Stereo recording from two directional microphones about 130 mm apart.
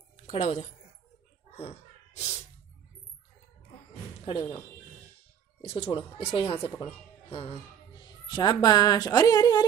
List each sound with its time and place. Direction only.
0.3 s speech: 55° left (ahead or behind)
1.6 s a sound: 50° left (ahead or behind)
4.2 s speech: 45° left (ahead or behind)
5.6 s speech: 50° left (ahead or behind)
6.6 s speech: 20° left (ahead or behind)
6.9 s speech: 45° left (ahead or behind)
8.0 s a woman's voice: 35° left (ahead or behind)